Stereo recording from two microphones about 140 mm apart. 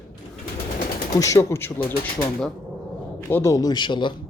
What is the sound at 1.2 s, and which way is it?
Speech, 25° left (ahead or behind).